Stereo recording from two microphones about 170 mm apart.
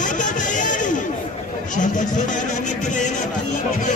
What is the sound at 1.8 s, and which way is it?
Music, 45° left (ahead or behind).